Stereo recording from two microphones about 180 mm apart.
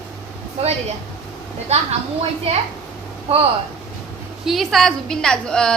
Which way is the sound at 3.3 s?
35° right (ahead or behind).